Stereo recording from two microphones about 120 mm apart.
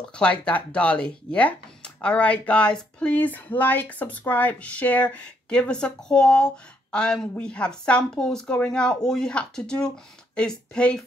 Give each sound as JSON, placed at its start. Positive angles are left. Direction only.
{"t": 0.1, "sound": "speech", "side_deg": 10}